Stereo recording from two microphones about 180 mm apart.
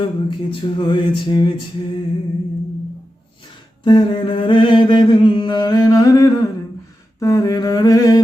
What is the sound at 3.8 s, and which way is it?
Mantra, 25° left (ahead or behind).